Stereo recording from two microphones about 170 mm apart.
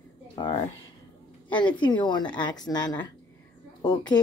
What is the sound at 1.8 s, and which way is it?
A woman's voice, 25° left (ahead or behind).